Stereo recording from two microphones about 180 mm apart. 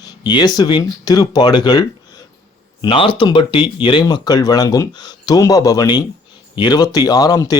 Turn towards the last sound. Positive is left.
turn(degrees=20)  # may be behind; listen again after turning